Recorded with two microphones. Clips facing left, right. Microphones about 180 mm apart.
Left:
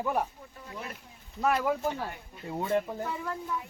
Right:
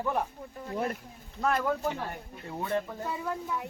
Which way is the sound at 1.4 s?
10° left (ahead or behind).